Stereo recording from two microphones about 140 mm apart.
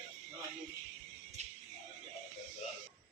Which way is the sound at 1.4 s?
55° right (ahead or behind).